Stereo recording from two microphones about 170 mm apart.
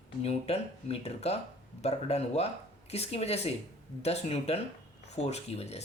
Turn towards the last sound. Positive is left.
turn(degrees=40)  # may be behind; listen again after turning